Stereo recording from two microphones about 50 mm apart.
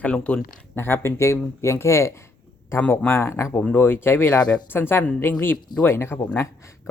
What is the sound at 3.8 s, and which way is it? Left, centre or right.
Speech, left.